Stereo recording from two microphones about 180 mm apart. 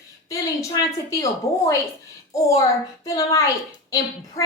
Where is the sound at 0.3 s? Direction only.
20° left (ahead or behind).